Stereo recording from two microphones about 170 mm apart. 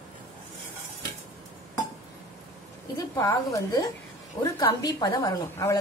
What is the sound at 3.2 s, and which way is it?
A woman's voice, 20° left (ahead or behind).